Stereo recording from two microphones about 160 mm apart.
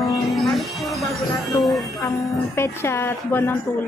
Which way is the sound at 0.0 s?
Centre (ahead or behind).